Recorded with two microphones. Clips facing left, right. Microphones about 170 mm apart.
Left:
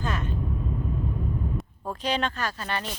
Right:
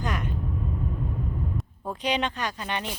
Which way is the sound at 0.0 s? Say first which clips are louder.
Even; 15° right (ahead or behind).